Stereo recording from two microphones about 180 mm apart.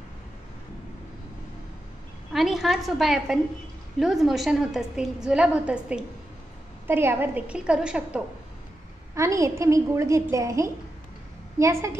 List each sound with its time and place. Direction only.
2.3 s a woman's voice: centre (ahead or behind)
9.1 s a woman's voice: 15° right (ahead or behind)